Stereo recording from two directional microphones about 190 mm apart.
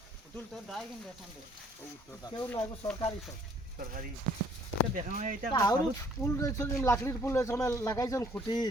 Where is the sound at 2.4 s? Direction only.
10° left (ahead or behind).